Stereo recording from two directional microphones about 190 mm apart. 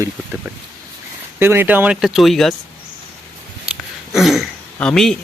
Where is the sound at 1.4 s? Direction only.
10° right (ahead or behind).